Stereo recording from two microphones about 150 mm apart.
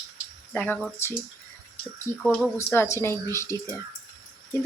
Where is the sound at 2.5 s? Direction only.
20° left (ahead or behind).